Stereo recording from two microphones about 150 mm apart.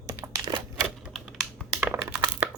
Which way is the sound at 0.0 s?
25° right (ahead or behind).